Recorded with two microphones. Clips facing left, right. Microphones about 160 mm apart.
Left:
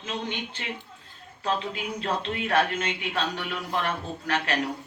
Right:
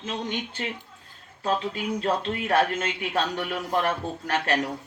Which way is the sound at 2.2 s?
45° right (ahead or behind).